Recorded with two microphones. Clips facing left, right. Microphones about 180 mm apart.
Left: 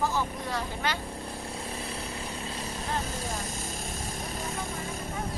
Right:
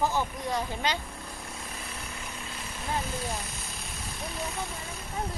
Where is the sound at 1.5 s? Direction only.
30° left (ahead or behind).